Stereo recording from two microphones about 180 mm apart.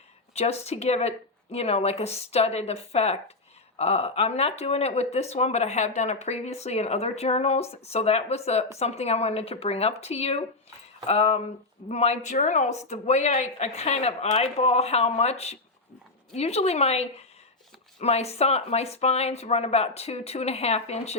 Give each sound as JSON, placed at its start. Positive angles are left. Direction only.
{"t": 0.3, "sound": "speech", "side_deg": 35}